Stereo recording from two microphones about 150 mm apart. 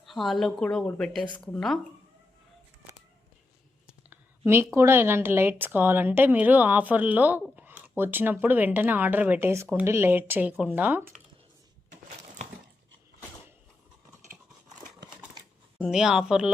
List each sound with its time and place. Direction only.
0.0 s speech: centre (ahead or behind)
3.8 s a woman's voice: 15° right (ahead or behind)
11.9 s a sound: 50° right (ahead or behind)
15.8 s speech: 5° right (ahead or behind)